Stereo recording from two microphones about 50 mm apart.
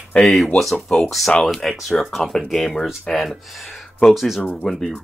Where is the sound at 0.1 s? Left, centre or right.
Centre.